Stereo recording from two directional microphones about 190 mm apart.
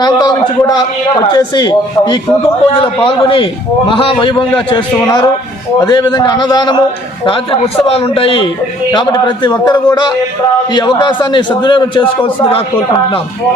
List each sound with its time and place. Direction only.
0.0 s a man's voice: 20° left (ahead or behind)
7.9 s a man's voice: 30° left (ahead or behind)